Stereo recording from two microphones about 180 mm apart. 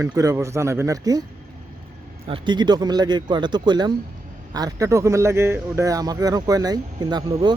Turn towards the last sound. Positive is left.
turn(degrees=-25)  # may be behind; listen again after turning